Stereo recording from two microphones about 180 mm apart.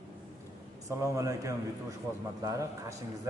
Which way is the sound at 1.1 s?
15° right (ahead or behind).